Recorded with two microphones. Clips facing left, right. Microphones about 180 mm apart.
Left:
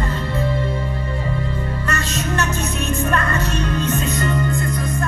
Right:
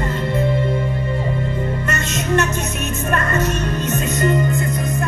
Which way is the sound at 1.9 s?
25° right (ahead or behind).